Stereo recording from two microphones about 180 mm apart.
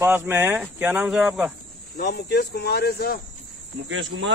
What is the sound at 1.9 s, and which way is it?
Speech, 60° left (ahead or behind).